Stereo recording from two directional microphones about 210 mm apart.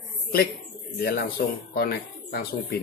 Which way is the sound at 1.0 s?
50° left (ahead or behind).